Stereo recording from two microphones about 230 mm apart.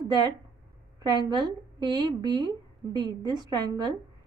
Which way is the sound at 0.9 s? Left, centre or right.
Centre.